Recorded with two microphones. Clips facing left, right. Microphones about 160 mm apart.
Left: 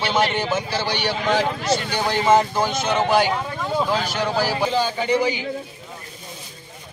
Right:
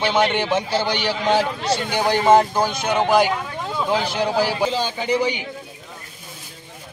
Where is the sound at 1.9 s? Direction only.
15° right (ahead or behind).